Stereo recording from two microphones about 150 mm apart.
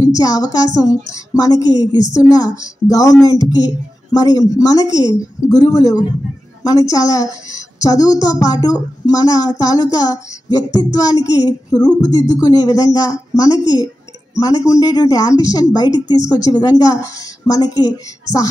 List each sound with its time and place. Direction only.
0.0 s a woman's voice: 25° left (ahead or behind)